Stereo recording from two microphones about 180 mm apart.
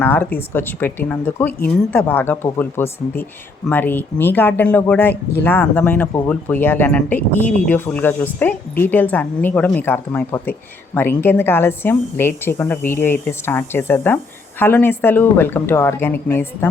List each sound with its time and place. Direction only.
0.0 s speech: 10° left (ahead or behind)